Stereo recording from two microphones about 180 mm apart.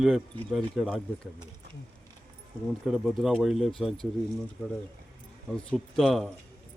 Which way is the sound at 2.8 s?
5° right (ahead or behind).